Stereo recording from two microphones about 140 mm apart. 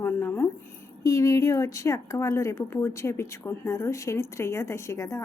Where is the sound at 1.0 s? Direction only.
20° left (ahead or behind).